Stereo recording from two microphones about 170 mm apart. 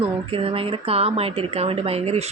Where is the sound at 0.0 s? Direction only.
35° right (ahead or behind).